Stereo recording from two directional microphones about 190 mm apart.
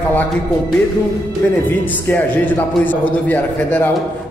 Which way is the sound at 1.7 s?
10° left (ahead or behind).